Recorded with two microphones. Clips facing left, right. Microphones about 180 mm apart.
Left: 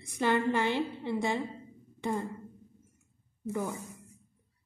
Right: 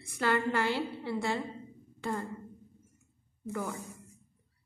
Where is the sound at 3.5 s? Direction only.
15° left (ahead or behind).